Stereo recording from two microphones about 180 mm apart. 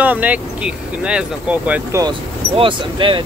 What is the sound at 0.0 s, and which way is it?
Speech, 10° right (ahead or behind).